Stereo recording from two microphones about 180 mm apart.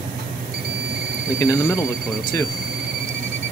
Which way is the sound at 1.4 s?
20° left (ahead or behind).